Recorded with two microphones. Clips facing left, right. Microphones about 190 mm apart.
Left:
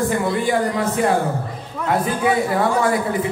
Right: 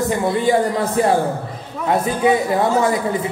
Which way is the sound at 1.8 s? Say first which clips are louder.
Right 2 dB; 20° right (ahead or behind).